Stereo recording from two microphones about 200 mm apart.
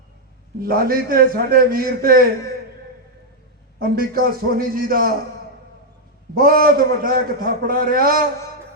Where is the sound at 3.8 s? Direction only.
50° right (ahead or behind).